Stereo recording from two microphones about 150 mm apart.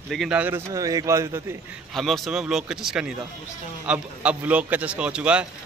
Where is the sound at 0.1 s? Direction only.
Centre (ahead or behind).